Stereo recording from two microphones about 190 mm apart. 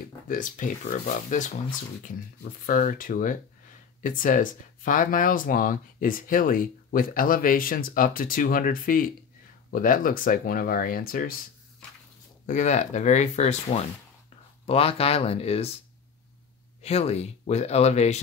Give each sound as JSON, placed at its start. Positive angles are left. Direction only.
{"t": 0.3, "sound": "speech", "side_deg": 45}
{"t": 2.6, "sound": "speech", "side_deg": 45}
{"t": 12.4, "sound": "speech", "side_deg": 40}
{"t": 16.8, "sound": "speech", "side_deg": 35}